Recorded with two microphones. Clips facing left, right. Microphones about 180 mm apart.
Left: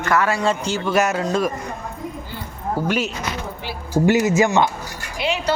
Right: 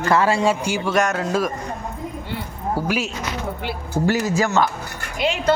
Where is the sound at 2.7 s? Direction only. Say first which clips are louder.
Left 2 dB; 5° right (ahead or behind).